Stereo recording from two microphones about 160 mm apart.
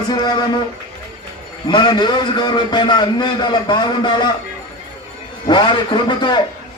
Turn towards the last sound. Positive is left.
turn(degrees=30)  # may be behind; listen again after turning